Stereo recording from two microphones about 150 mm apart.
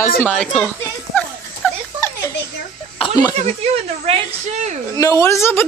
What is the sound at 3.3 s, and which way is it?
A woman's voice, 45° right (ahead or behind).